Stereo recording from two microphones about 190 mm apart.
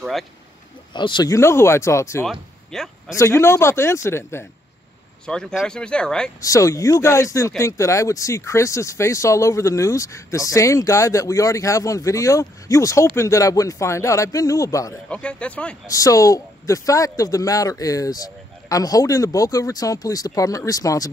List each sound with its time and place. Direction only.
0.9 s speech: 25° left (ahead or behind)
2.7 s a sound: centre (ahead or behind)
3.2 s speech: 15° left (ahead or behind)
6.4 s speech: 15° left (ahead or behind)
15.0 s speech: 5° left (ahead or behind)
15.9 s speech: 15° left (ahead or behind)